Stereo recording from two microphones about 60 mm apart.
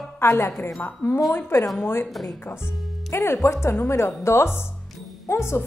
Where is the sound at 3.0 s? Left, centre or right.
Left.